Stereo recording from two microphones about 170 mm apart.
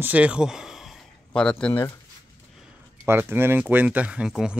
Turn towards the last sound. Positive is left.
turn(degrees=-5)  # may be behind; listen again after turning